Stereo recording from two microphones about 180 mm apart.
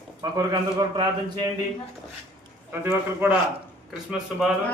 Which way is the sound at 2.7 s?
10° right (ahead or behind).